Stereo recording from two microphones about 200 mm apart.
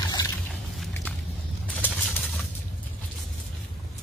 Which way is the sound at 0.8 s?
5° left (ahead or behind).